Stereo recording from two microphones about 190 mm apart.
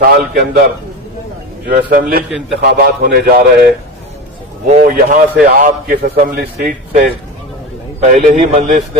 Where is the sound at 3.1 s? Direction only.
55° right (ahead or behind).